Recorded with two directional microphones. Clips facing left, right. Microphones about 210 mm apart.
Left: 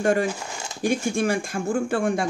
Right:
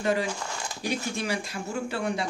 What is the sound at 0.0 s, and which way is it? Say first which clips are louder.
Speech: left 5 dB; 50° left (ahead or behind).